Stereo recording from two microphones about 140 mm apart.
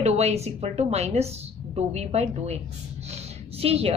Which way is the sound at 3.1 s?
45° right (ahead or behind).